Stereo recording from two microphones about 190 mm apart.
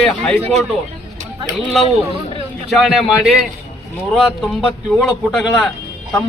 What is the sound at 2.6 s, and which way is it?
A man's voice, centre (ahead or behind).